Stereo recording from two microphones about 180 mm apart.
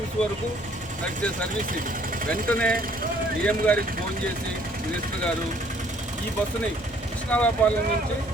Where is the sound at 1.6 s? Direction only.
50° right (ahead or behind).